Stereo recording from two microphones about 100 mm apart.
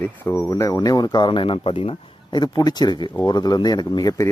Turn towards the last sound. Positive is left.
turn(degrees=40)  # may be behind; listen again after turning